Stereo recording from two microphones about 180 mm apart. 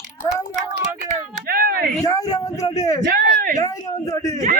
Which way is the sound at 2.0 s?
20° left (ahead or behind).